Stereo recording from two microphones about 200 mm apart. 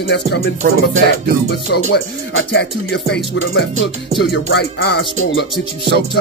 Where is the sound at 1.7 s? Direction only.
70° left (ahead or behind).